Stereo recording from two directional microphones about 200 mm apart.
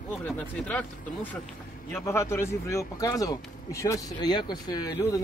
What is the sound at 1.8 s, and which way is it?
Speech, 15° left (ahead or behind).